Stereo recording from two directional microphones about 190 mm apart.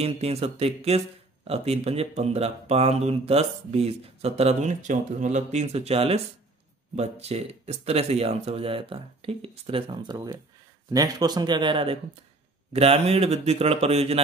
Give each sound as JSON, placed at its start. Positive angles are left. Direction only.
{"t": 0.0, "sound": "speech", "side_deg": -35}